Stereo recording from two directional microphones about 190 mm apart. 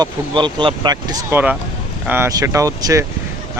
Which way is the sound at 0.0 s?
25° right (ahead or behind).